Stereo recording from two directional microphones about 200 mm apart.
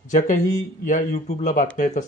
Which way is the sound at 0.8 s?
40° left (ahead or behind).